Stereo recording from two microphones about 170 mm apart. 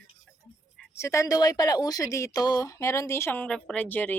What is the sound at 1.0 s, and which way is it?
A woman's voice, 20° left (ahead or behind).